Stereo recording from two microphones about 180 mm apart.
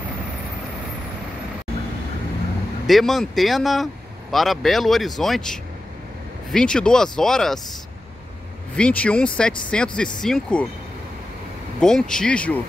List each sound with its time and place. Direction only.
2.9 s speech: centre (ahead or behind)
8.7 s speech: 5° left (ahead or behind)
11.8 s speech: 5° left (ahead or behind)